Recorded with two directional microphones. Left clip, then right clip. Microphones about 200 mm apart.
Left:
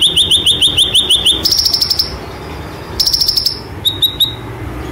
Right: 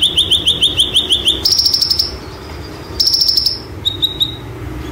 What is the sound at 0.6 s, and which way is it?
Bird, 20° left (ahead or behind).